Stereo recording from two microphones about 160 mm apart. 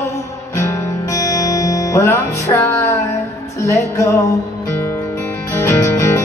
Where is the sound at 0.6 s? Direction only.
20° left (ahead or behind).